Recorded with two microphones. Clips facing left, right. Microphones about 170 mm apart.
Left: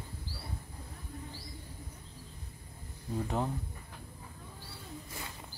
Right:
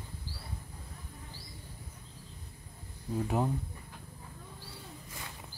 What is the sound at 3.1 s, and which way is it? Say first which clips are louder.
Speech: right 2 dB; 5° right (ahead or behind).